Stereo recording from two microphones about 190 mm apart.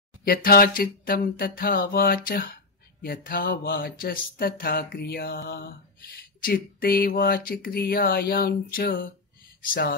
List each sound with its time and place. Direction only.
0.2 s speech: 50° left (ahead or behind)